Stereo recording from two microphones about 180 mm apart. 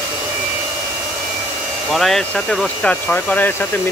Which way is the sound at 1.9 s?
Centre (ahead or behind).